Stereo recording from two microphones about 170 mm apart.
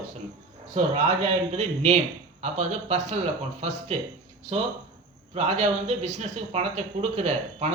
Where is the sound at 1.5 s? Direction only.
40° right (ahead or behind).